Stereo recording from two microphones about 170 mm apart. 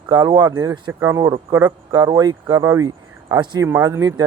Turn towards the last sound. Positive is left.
turn(degrees=-20)  # may be behind; listen again after turning